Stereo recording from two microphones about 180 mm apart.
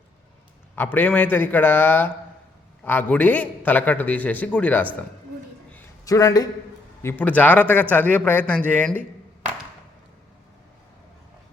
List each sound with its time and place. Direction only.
0.8 s a man's voice: 10° left (ahead or behind)
6.1 s a man's voice: 20° left (ahead or behind)